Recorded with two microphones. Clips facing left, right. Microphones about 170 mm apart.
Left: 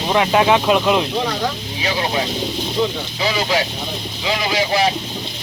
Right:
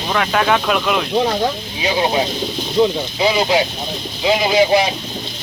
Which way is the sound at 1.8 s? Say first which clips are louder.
Right 4 dB; 25° right (ahead or behind).